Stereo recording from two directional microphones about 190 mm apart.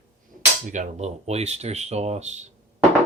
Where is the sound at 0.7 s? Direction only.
35° right (ahead or behind).